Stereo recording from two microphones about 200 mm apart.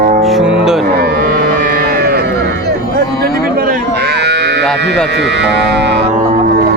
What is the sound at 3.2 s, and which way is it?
Moo, 50° right (ahead or behind).